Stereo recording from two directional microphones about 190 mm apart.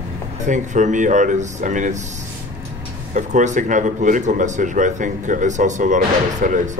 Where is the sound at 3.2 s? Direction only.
40° right (ahead or behind).